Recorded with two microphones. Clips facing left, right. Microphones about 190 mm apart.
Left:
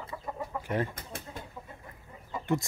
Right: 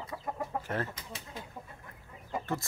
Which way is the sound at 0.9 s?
50° left (ahead or behind).